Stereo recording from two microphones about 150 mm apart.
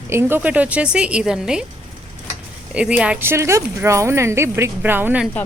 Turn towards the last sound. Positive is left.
turn(degrees=-10)  # may be behind; listen again after turning